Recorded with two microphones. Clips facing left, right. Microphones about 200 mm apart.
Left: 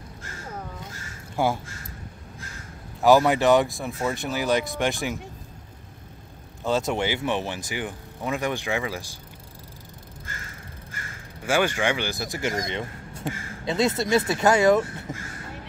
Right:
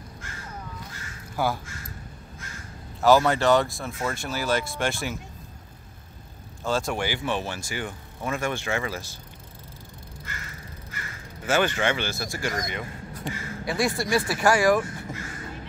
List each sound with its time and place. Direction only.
1.3 s speech: 25° left (ahead or behind)
3.0 s speech: 15° left (ahead or behind)
6.6 s speech: 20° left (ahead or behind)
11.4 s speech: 10° left (ahead or behind)
12.6 s a sound: 25° left (ahead or behind)
13.7 s speech: 20° left (ahead or behind)
15.1 s a sound: 20° left (ahead or behind)